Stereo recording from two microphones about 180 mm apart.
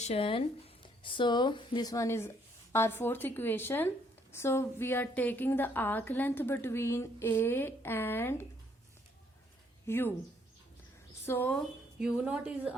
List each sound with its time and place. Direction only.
0.0 s speech: 35° left (ahead or behind); by 8.4 s 10° left (ahead or behind)
9.8 s speech: 15° left (ahead or behind)
11.3 s speech: 10° left (ahead or behind)
11.9 s a woman's voice: 5° right (ahead or behind)